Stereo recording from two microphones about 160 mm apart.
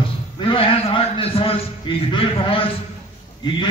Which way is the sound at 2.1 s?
35° left (ahead or behind).